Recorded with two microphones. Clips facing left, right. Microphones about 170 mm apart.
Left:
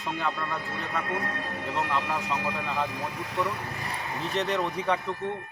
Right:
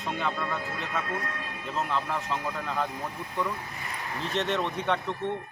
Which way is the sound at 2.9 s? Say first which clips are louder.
Left 2 dB; 90° left.